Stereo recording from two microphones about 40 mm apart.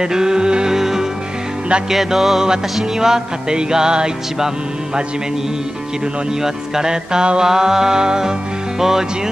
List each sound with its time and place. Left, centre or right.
0.0 s music: centre
0.7 s music: centre
6.4 s music: centre